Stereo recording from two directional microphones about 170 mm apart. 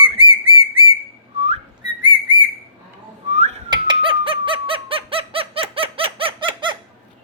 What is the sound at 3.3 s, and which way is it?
Whistling, 40° right (ahead or behind).